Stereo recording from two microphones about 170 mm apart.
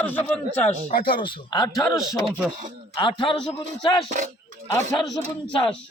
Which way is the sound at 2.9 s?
30° left (ahead or behind).